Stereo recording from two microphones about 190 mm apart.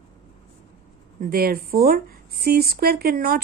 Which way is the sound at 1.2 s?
50° right (ahead or behind).